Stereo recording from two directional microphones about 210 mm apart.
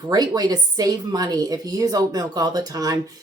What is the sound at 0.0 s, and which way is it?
Speech, 20° right (ahead or behind).